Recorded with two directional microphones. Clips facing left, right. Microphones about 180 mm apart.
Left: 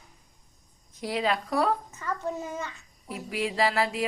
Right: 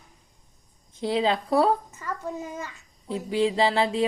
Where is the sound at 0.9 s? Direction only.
25° right (ahead or behind).